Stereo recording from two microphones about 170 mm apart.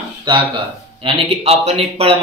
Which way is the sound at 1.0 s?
35° right (ahead or behind).